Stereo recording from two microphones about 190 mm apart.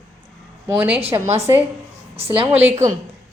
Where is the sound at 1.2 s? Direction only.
35° right (ahead or behind).